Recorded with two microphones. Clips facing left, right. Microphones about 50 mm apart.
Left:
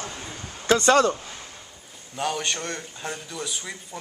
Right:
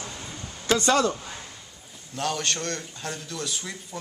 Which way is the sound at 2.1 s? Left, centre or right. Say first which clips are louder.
Left 1 dB; centre.